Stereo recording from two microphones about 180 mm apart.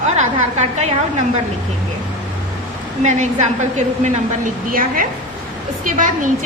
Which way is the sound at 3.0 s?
40° right (ahead or behind).